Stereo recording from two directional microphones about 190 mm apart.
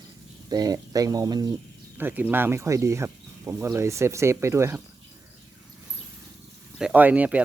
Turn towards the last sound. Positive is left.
turn(degrees=-5)  # may be behind; listen again after turning